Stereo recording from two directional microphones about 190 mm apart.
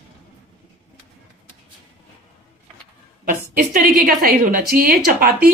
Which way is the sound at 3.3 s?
50° right (ahead or behind).